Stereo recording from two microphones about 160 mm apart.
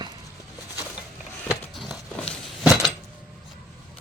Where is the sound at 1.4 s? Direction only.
Centre (ahead or behind).